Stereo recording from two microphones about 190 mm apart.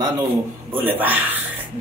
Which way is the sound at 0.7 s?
10° right (ahead or behind).